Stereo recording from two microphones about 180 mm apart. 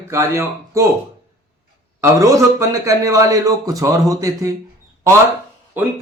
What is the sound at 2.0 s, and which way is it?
Speech, 15° right (ahead or behind).